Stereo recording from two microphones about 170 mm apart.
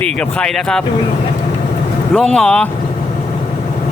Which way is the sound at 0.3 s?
5° left (ahead or behind).